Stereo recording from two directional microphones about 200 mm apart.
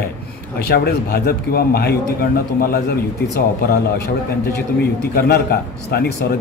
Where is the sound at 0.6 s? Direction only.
50° left (ahead or behind).